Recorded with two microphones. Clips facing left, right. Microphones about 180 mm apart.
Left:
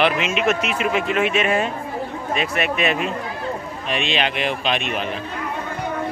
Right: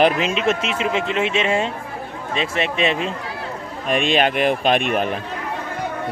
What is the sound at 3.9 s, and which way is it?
A man's voice, 50° right (ahead or behind).